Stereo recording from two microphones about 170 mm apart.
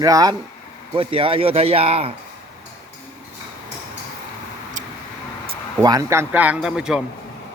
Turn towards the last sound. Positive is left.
turn(degrees=-5)  # may be behind; listen again after turning